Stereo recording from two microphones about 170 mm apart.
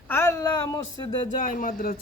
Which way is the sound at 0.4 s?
25° left (ahead or behind).